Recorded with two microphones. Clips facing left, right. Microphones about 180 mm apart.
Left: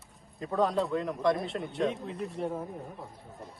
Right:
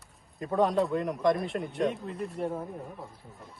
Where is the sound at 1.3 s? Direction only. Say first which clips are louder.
Right 2 dB; centre (ahead or behind).